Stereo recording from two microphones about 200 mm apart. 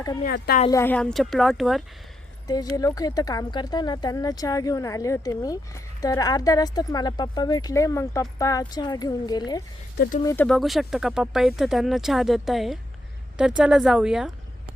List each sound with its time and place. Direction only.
0.3 s speech: 50° left (ahead or behind)
0.7 s speech: 10° left (ahead or behind)
2.5 s speech: 20° left (ahead or behind)
10.2 s speech: 10° left (ahead or behind)